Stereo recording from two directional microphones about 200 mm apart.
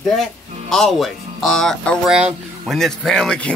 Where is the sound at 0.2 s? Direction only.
Centre (ahead or behind).